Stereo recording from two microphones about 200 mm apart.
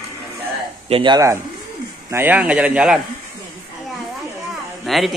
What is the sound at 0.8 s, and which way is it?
A man's voice, 25° right (ahead or behind).